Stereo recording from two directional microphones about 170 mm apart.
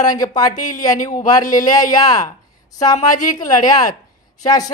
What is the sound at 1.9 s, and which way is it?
Speech, 20° left (ahead or behind).